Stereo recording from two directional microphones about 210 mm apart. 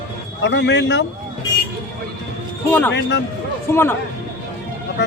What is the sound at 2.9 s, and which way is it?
Speech, 55° left (ahead or behind).